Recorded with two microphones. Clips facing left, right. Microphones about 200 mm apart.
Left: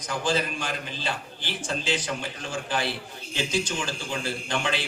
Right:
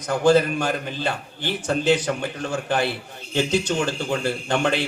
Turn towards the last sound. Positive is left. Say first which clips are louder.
# right 7 dB
turn(degrees=-60)  # may be behind; listen again after turning